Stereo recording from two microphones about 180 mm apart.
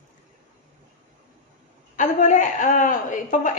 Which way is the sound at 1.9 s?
40° left (ahead or behind).